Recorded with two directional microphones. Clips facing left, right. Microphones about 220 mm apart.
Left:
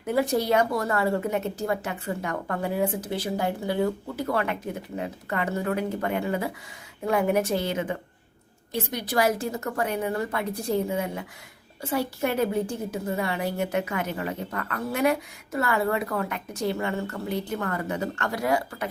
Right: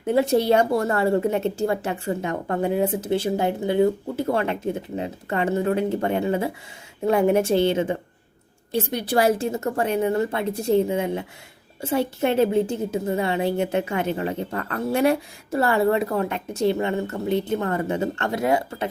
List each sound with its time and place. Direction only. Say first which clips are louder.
0.0 s a woman's voice: right 5 dB; 25° right (ahead or behind)